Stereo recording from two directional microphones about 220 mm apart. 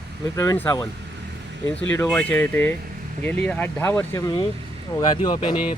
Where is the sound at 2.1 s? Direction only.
5° left (ahead or behind).